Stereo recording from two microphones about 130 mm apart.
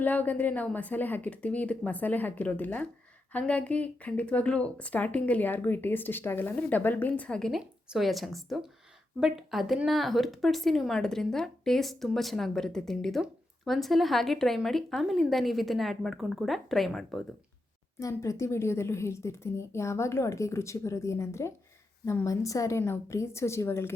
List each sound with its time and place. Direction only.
0.0 s speech: 15° left (ahead or behind)
18.0 s a woman's voice: 25° left (ahead or behind)